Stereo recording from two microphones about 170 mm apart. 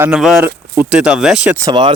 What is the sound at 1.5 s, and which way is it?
Speech, 25° right (ahead or behind).